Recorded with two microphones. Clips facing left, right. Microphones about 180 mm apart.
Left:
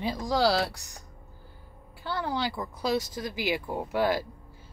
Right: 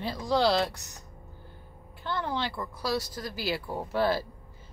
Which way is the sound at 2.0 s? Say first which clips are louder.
Left 1 dB; 10° left (ahead or behind).